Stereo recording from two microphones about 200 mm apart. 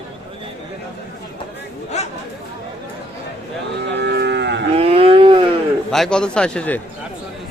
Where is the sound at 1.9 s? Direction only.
35° left (ahead or behind).